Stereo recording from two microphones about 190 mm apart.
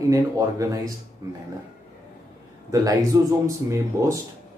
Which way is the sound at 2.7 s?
20° right (ahead or behind).